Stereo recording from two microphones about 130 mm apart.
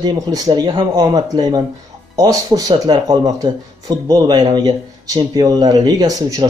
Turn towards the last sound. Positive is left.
turn(degrees=-30)  # may be behind; listen again after turning